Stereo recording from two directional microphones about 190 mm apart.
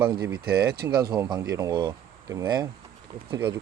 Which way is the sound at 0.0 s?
20° right (ahead or behind).